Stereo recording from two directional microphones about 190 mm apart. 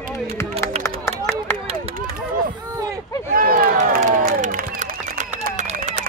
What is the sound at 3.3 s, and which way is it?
Crowd, 50° right (ahead or behind).